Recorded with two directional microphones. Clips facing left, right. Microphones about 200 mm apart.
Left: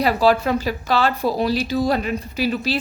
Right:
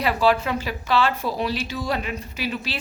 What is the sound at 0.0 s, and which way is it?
A woman's voice, 40° left (ahead or behind).